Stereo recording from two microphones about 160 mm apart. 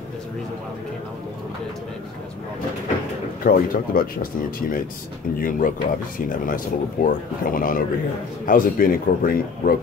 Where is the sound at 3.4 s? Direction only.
60° left (ahead or behind).